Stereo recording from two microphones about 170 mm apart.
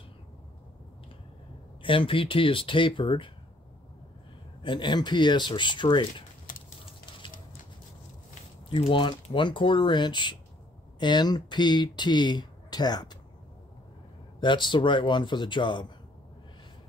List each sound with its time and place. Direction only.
1.8 s speech: 30° left (ahead or behind)
4.6 s speech: 30° left (ahead or behind)
6.5 s a sound: 50° left (ahead or behind)
8.6 s speech: 30° left (ahead or behind)
14.4 s speech: 25° left (ahead or behind)